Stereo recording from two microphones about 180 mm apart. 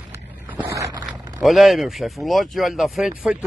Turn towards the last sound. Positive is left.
turn(degrees=-5)  # may be behind; listen again after turning